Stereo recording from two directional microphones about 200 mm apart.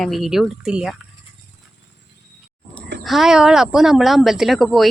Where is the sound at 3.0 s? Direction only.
Centre (ahead or behind).